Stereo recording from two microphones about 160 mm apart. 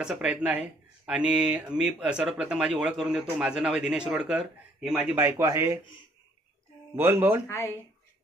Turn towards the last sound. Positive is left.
turn(degrees=15)  # may be behind; listen again after turning